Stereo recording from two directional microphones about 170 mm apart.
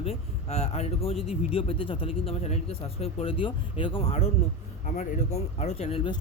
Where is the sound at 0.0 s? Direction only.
35° left (ahead or behind).